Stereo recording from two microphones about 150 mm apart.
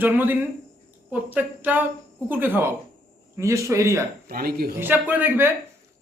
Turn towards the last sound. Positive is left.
turn(degrees=-15)  # may be behind; listen again after turning